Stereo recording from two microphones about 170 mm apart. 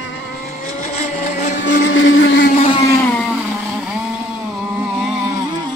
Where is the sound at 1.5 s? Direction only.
90° left.